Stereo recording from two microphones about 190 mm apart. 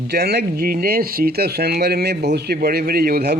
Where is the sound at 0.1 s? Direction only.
55° right (ahead or behind).